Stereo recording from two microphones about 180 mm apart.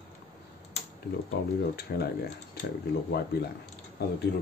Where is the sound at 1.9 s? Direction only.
55° left (ahead or behind).